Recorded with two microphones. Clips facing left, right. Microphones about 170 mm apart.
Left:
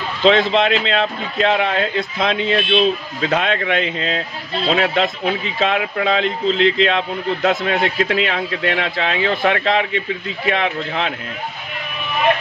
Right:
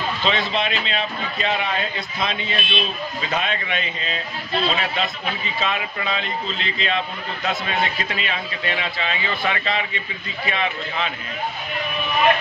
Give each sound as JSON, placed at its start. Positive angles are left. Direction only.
{"t": 0.2, "sound": "speech", "side_deg": 90}
{"t": 4.6, "sound": "speech", "side_deg": 75}